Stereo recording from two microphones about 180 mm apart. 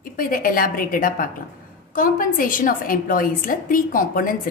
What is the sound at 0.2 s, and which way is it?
A woman's voice, 50° left (ahead or behind).